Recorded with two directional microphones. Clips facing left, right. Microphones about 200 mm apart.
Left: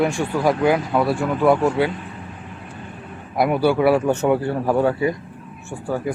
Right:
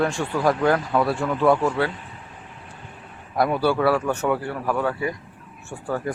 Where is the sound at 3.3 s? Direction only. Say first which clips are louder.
Left 3 dB; 15° left (ahead or behind).